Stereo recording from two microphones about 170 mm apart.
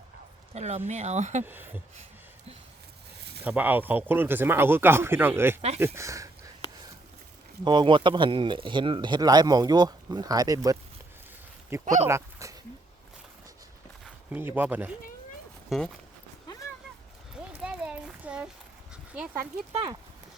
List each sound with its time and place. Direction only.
0.5 s speech: 40° right (ahead or behind)
1.5 s speech: 10° right (ahead or behind)
3.2 s a sound: 75° right (ahead or behind)
3.4 s speech: 10° right (ahead or behind)
7.6 s speech: 25° right (ahead or behind)
14.3 s speech: 10° right (ahead or behind)
17.6 s a sound: 5° right (ahead or behind)
19.1 s speech: 10° right (ahead or behind)
19.7 s speech: 25° right (ahead or behind)